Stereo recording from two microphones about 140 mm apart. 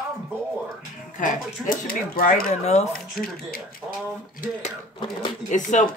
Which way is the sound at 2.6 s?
50° left (ahead or behind).